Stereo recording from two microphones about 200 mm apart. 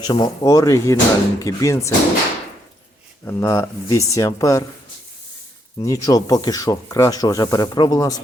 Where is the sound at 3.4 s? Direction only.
15° left (ahead or behind).